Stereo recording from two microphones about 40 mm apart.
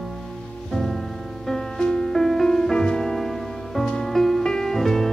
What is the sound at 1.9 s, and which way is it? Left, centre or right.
Music, centre.